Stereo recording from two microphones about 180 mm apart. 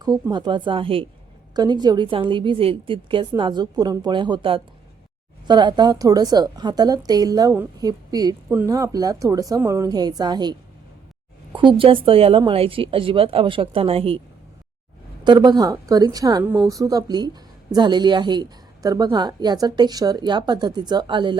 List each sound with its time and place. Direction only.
0.0 s a woman's voice: 20° right (ahead or behind)
15.2 s a woman's voice: 25° right (ahead or behind)